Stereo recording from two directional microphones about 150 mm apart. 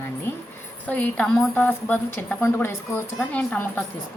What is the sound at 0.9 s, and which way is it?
A woman's voice, 10° left (ahead or behind).